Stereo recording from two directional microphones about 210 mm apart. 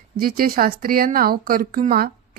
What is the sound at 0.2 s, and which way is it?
Speech, 45° right (ahead or behind).